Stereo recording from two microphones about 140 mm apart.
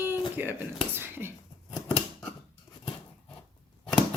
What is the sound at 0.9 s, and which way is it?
Whispering, 15° right (ahead or behind).